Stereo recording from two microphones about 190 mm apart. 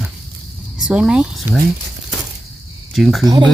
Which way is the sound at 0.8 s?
5° right (ahead or behind).